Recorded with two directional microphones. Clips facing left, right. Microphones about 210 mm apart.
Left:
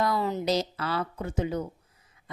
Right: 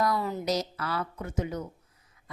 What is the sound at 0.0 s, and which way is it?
Speech, 25° left (ahead or behind).